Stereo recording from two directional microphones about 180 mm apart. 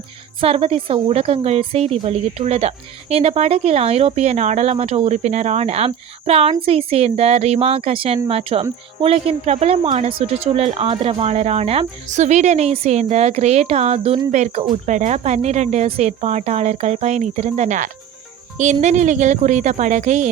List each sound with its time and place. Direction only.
0.3 s a woman's voice: 30° right (ahead or behind)